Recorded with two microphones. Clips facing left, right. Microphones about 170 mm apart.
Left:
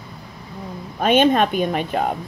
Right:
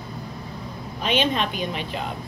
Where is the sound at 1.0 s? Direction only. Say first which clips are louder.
Left 8 dB; 50° left (ahead or behind).